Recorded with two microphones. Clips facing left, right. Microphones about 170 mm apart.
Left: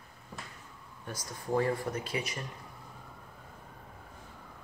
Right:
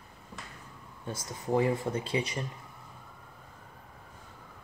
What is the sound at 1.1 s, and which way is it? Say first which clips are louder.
Speech: right 3 dB; 20° right (ahead or behind).